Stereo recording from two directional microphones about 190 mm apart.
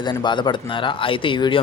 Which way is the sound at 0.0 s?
25° left (ahead or behind).